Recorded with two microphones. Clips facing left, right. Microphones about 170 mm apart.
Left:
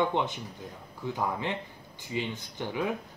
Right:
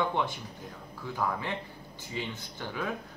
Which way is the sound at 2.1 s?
15° left (ahead or behind).